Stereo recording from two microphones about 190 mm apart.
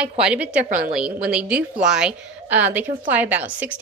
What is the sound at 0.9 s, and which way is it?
A woman's voice, 5° right (ahead or behind).